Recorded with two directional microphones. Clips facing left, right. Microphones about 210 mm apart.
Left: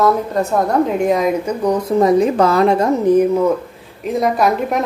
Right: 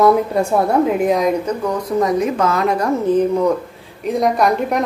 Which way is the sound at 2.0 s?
30° left (ahead or behind).